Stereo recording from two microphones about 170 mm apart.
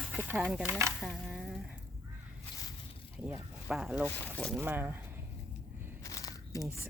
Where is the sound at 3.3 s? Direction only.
5° right (ahead or behind).